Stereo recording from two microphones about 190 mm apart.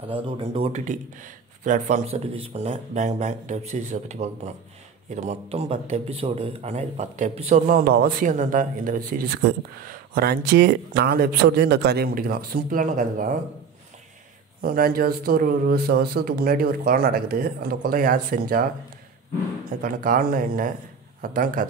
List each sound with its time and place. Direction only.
0.1 s a man's voice: 30° right (ahead or behind)
14.6 s a man's voice: 50° right (ahead or behind)
19.8 s a man's voice: 45° right (ahead or behind)